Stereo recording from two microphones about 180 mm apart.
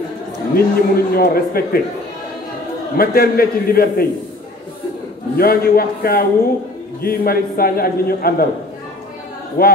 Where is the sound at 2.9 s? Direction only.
55° left (ahead or behind).